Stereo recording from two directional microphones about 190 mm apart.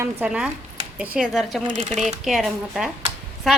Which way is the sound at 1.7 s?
40° right (ahead or behind).